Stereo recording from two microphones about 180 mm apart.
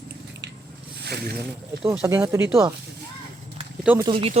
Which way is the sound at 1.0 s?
65° right (ahead or behind).